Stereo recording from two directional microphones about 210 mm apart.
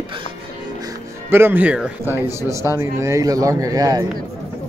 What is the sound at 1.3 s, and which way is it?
Speech, 10° right (ahead or behind).